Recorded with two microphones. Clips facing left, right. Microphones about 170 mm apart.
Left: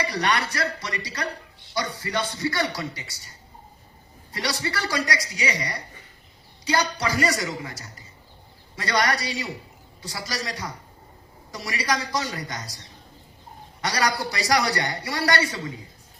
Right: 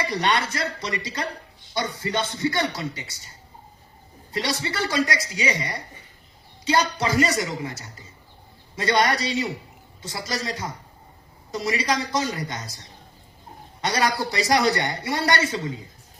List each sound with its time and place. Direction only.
0.0 s speech: 25° right (ahead or behind)
13.8 s speech: 20° right (ahead or behind)